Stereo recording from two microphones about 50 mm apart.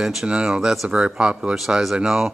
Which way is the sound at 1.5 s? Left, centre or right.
Centre.